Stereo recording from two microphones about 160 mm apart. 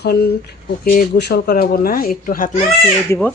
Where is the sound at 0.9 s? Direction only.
70° left (ahead or behind).